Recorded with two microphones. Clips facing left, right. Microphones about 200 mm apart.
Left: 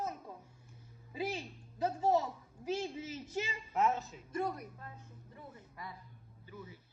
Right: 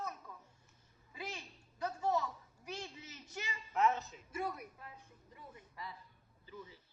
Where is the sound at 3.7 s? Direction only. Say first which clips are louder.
Left 1 dB; centre (ahead or behind).